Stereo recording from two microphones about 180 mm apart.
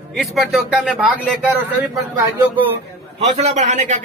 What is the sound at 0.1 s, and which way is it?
Speech, centre (ahead or behind).